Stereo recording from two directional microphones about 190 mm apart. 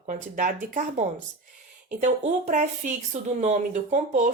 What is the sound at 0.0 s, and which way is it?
Speech, 40° right (ahead or behind).